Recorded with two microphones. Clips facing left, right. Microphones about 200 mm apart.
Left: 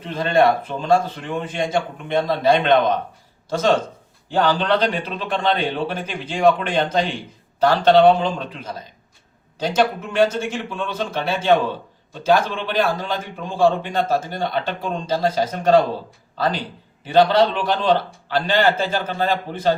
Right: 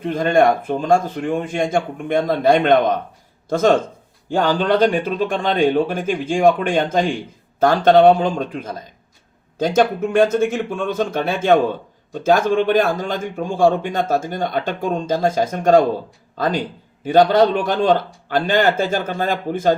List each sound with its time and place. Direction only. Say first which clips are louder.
0.0 s speech: right 2 dB; 50° right (ahead or behind)